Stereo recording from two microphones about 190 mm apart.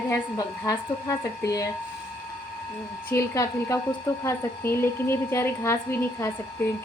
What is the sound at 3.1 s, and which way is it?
A woman's voice, 15° left (ahead or behind).